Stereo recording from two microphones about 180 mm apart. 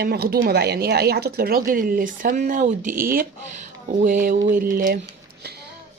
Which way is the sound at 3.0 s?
55° right (ahead or behind).